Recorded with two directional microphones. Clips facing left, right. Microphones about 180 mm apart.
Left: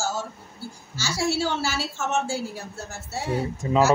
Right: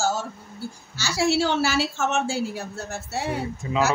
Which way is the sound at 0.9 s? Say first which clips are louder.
Right 3 dB; 70° right (ahead or behind).